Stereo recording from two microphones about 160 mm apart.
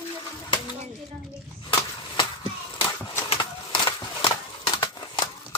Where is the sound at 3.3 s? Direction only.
30° left (ahead or behind).